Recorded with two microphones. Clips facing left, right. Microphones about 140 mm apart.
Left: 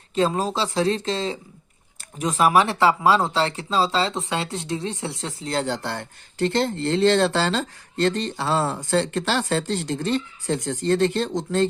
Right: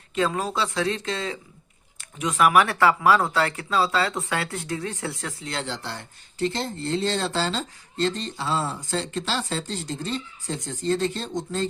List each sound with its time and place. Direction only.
0.1 s speech: 30° left (ahead or behind); by 11.6 s 70° left (ahead or behind)